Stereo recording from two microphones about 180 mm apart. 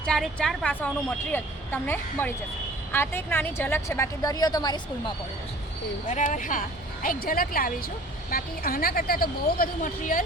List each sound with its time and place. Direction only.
0.0 s a woman's voice: 5° left (ahead or behind); by 5.1 s 25° left (ahead or behind)
6.1 s speech: 45° left (ahead or behind)